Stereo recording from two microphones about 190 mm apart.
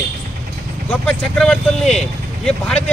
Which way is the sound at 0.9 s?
10° left (ahead or behind).